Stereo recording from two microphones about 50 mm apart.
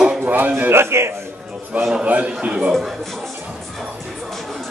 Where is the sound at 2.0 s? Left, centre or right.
Right.